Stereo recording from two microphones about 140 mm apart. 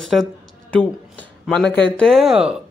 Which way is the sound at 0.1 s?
5° left (ahead or behind).